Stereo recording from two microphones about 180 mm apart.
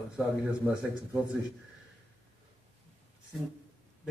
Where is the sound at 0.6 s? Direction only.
15° right (ahead or behind).